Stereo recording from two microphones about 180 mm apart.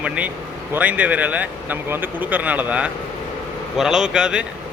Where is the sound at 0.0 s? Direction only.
5° right (ahead or behind).